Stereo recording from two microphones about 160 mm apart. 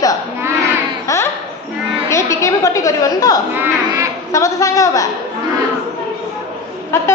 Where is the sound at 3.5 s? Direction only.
15° right (ahead or behind).